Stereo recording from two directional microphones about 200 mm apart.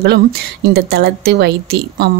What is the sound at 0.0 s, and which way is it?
A woman's voice, 55° right (ahead or behind).